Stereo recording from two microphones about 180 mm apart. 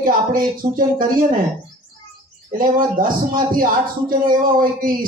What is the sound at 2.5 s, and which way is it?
Speech, 50° right (ahead or behind).